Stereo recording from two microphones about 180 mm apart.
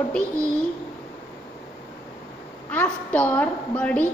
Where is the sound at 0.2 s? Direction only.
15° right (ahead or behind).